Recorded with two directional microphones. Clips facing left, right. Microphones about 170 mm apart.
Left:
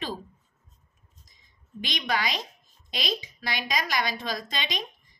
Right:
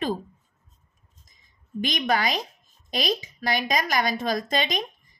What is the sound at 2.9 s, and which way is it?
A woman's voice, 45° right (ahead or behind).